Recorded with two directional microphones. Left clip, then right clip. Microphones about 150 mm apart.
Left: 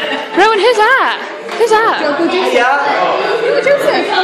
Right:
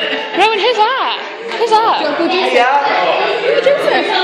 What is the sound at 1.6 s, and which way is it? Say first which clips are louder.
Speech: left 1 dB; 50° left (ahead or behind).